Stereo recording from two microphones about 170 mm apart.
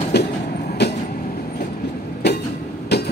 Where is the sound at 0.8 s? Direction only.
80° left.